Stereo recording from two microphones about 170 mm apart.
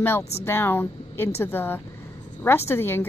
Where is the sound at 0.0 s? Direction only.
15° left (ahead or behind).